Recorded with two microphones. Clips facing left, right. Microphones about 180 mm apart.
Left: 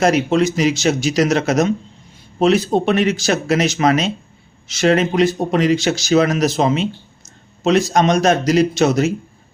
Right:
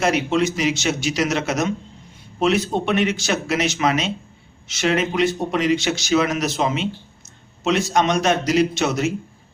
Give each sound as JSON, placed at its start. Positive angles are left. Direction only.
{"t": 0.0, "sound": "speech", "side_deg": 40}